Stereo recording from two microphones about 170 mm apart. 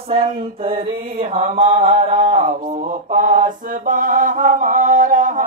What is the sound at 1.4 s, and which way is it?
Mantra, 40° right (ahead or behind).